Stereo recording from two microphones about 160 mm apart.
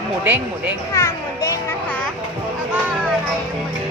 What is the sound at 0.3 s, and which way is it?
Speech, 10° right (ahead or behind).